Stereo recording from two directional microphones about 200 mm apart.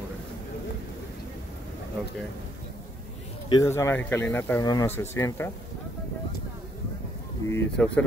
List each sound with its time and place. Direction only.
3.4 s speech: 15° left (ahead or behind)
7.4 s speech: 15° left (ahead or behind)